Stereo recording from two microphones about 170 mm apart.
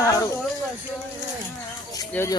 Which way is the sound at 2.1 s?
15° left (ahead or behind).